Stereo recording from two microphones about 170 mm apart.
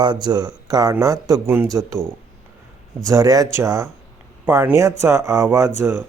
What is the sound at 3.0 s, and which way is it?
Speech, 20° right (ahead or behind).